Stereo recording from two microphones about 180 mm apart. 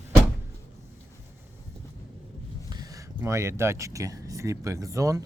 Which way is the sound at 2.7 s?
20° right (ahead or behind).